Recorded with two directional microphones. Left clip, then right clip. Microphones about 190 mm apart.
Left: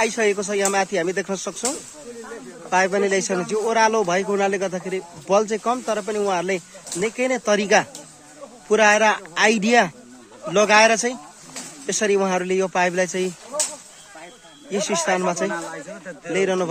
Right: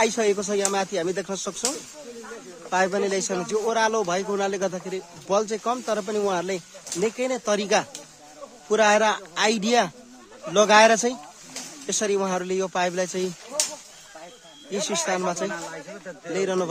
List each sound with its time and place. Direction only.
0.0 s a man's voice: centre (ahead or behind)
14.8 s a man's voice: centre (ahead or behind)
15.5 s speech: 20° right (ahead or behind)
16.3 s a man's voice: 5° right (ahead or behind)